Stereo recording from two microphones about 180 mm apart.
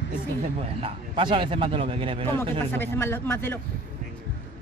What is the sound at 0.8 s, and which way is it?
A man's voice, 30° right (ahead or behind).